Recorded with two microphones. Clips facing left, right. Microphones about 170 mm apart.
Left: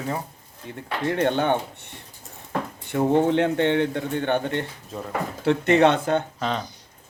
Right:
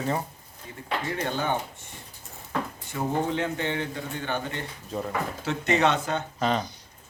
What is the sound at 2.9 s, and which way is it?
Speech, 55° left (ahead or behind).